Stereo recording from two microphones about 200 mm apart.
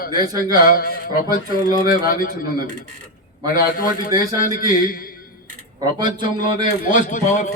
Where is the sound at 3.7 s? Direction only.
45° left (ahead or behind).